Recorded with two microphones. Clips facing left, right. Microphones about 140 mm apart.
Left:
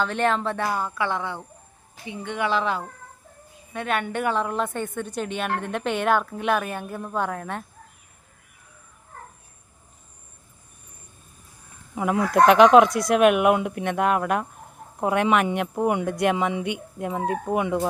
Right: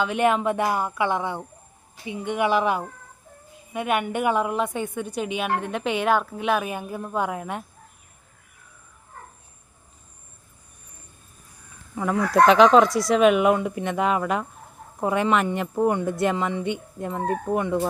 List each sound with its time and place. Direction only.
0.0 s a woman's voice: 10° right (ahead or behind)
11.9 s speech: 15° left (ahead or behind)